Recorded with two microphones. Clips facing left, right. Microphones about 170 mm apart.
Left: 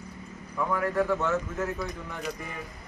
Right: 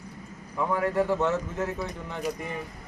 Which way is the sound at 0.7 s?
25° right (ahead or behind).